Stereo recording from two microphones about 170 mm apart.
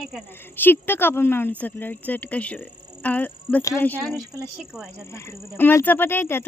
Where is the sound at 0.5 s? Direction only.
10° left (ahead or behind).